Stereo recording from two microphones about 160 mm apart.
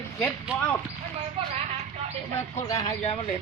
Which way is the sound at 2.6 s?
20° left (ahead or behind).